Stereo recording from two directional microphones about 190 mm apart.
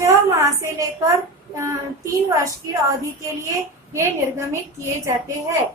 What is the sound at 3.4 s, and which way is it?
A woman's voice, 15° right (ahead or behind).